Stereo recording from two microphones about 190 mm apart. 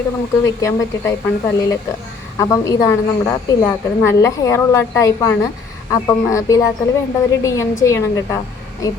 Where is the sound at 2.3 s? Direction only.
20° left (ahead or behind).